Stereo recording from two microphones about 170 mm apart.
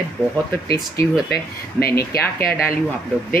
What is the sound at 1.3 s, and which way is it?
Speech, 65° left (ahead or behind).